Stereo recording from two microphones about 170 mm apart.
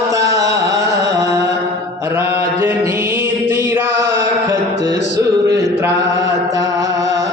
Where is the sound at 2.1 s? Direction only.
15° right (ahead or behind).